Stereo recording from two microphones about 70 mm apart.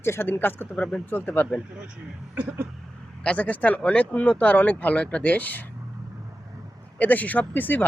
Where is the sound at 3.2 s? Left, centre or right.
Centre.